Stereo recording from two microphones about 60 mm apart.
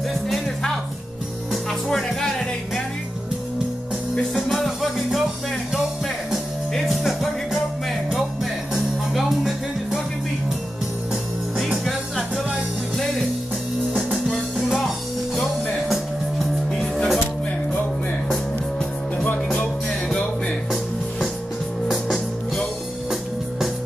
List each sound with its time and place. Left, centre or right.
1.5 s music: centre
4.1 s music: centre
6.7 s music: centre
8.7 s music: centre
14.6 s music: centre
15.9 s music: centre
19.1 s music: left